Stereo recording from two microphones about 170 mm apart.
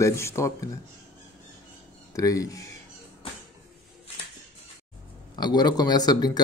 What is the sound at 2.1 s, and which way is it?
Speech, 20° left (ahead or behind).